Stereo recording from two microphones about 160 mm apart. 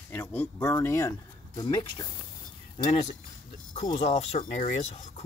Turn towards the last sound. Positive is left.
turn(degrees=45)  # may be behind; listen again after turning